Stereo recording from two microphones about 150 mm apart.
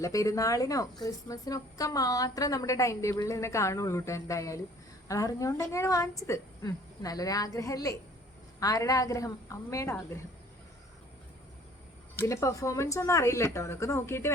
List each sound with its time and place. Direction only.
0.0 s a woman's voice: 20° left (ahead or behind)
12.2 s a woman's voice: 20° left (ahead or behind)